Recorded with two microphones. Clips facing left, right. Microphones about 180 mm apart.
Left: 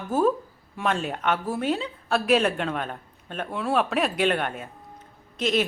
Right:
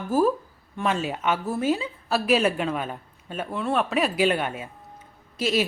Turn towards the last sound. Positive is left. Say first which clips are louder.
# even
turn(degrees=-5)  # may be behind; listen again after turning